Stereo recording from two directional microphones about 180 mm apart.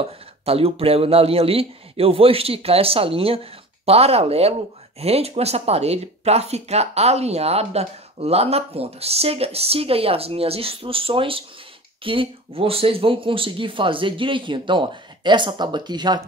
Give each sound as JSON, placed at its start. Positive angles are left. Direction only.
{"t": 0.5, "sound": "speech", "side_deg": -30}